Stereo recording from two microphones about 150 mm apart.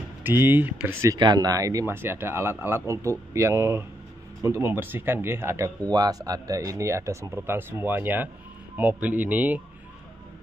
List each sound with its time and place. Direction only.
0.2 s speech: 15° right (ahead or behind)